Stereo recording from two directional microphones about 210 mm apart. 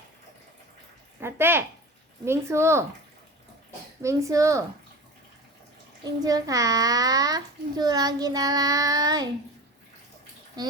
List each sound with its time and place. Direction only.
1.2 s a child's voice: 10° right (ahead or behind)
4.0 s a child's voice: 15° right (ahead or behind)
6.2 s a child's voice: 15° right (ahead or behind)